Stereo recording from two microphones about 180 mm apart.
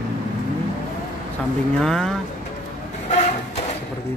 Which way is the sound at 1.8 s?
5° left (ahead or behind).